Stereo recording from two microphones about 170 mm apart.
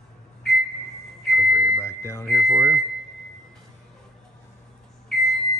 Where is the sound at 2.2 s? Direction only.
Centre (ahead or behind).